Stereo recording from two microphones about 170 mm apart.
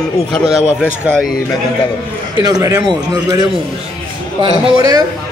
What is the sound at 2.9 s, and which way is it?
Speech, 20° right (ahead or behind).